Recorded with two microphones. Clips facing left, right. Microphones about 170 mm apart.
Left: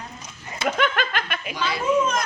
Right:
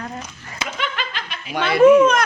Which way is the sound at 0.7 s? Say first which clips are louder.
Left 4 dB; 50° left (ahead or behind).